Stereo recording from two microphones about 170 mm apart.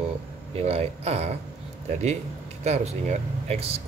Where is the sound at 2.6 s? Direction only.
40° right (ahead or behind).